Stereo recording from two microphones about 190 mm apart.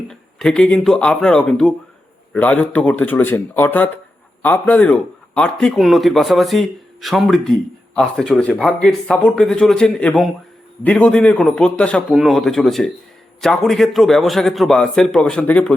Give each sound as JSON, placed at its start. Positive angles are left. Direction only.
{"t": 0.1, "sound": "a man's voice", "side_deg": 5}